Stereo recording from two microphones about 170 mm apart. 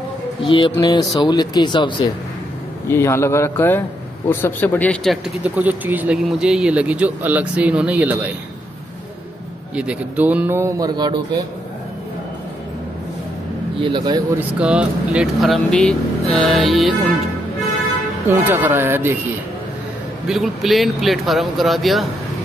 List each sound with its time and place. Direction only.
0.5 s speech: 30° left (ahead or behind)
2.9 s a man's voice: 15° left (ahead or behind); by 8.3 s 10° right (ahead or behind)
9.8 s speech: 10° right (ahead or behind); by 11.2 s 25° right (ahead or behind)
13.7 s a man's voice: 30° right (ahead or behind)
14.6 s speech: 5° right (ahead or behind)
18.4 s speech: 10° right (ahead or behind)
20.2 s speech: centre (ahead or behind)